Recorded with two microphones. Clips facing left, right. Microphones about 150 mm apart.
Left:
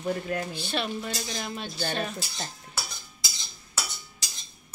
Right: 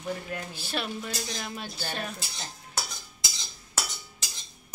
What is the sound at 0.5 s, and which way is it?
Speech, 5° right (ahead or behind).